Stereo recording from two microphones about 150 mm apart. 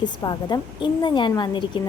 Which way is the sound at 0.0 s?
30° left (ahead or behind).